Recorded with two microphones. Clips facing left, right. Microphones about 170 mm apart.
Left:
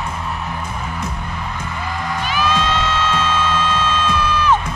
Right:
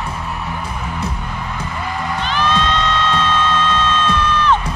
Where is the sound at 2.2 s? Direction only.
10° left (ahead or behind).